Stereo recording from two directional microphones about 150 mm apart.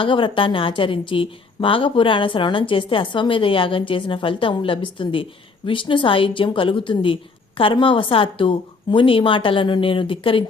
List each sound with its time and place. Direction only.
0.0 s a woman's voice: 35° left (ahead or behind)